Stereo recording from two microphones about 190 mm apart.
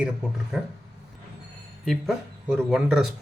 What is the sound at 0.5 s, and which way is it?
Speech, centre (ahead or behind).